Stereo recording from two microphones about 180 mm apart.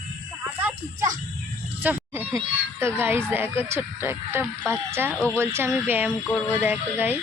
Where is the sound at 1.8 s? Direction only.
10° right (ahead or behind).